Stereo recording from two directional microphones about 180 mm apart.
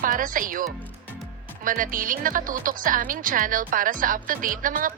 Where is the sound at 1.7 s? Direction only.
50° right (ahead or behind).